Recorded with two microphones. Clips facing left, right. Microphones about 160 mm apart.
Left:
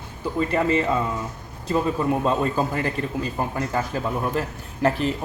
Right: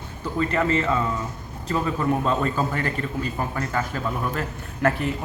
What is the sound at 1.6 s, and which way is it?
A man's voice, 15° left (ahead or behind).